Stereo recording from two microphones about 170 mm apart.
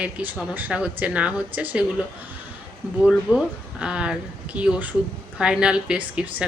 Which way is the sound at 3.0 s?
5° right (ahead or behind).